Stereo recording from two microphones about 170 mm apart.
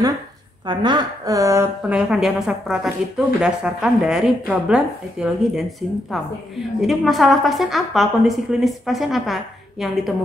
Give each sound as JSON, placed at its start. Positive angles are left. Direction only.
{"t": 0.7, "sound": "a woman's voice", "side_deg": -25}
{"t": 1.8, "sound": "a woman's voice", "side_deg": -5}